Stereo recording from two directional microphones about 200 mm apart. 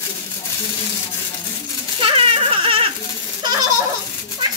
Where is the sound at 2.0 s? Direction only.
25° right (ahead or behind).